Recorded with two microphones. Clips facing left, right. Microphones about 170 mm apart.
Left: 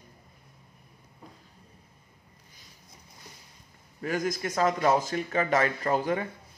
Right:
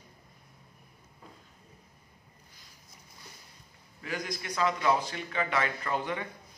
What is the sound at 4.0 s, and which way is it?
A man's voice, 45° left (ahead or behind).